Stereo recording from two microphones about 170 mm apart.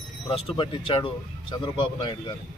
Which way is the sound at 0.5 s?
30° left (ahead or behind).